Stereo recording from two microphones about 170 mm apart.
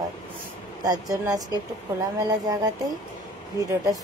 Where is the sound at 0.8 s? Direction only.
20° right (ahead or behind).